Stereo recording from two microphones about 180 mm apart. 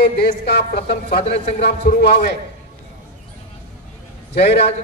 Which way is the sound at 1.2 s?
35° left (ahead or behind).